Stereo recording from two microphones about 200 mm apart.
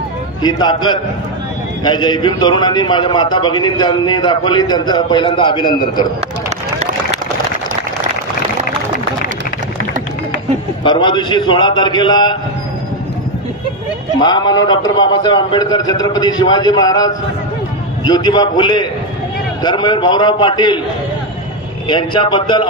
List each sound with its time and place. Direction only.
0.4 s a man's voice: 20° left (ahead or behind)
10.8 s a man's voice: 25° left (ahead or behind)
14.2 s a man's voice: 20° left (ahead or behind)
21.8 s a man's voice: 25° left (ahead or behind)